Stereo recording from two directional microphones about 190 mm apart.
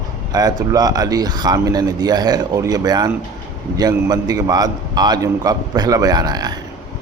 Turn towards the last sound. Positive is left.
turn(degrees=-20)  # may be behind; listen again after turning